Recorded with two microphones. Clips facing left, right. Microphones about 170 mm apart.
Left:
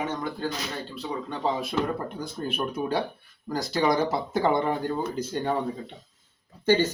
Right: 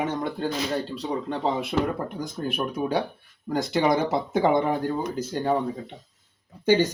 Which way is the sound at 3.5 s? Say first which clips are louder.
Right 2 dB; 20° right (ahead or behind).